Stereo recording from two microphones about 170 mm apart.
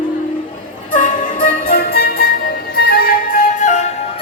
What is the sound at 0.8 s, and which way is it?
Music, 50° left (ahead or behind).